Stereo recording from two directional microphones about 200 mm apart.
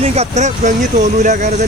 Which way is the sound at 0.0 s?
30° right (ahead or behind).